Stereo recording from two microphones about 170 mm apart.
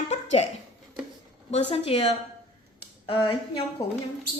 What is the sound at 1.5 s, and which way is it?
Speech, 40° left (ahead or behind).